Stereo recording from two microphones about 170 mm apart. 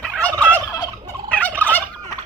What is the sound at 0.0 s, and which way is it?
Fowl, 5° left (ahead or behind).